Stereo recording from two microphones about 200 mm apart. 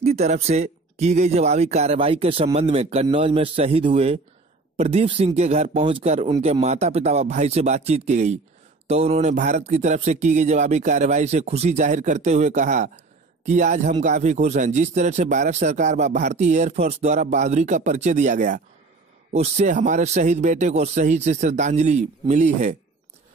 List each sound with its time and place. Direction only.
0.0 s a man's voice: 35° right (ahead or behind)